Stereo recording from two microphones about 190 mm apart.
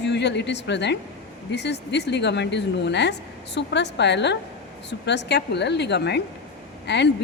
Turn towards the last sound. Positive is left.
turn(degrees=65)  # may be behind; listen again after turning